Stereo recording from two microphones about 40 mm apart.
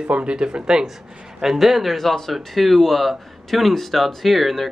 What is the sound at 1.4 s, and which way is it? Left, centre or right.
Speech, centre.